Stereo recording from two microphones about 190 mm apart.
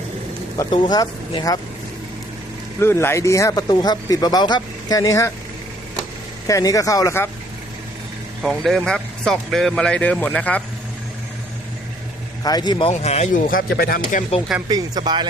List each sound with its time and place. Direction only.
0.5 s speech: 20° left (ahead or behind)
2.8 s speech: 15° left (ahead or behind)
6.5 s speech: 20° left (ahead or behind)
8.4 s speech: centre (ahead or behind)
12.4 s speech: 20° left (ahead or behind)
12.9 s speech: 35° left (ahead or behind)
14.7 s speech: 20° right (ahead or behind)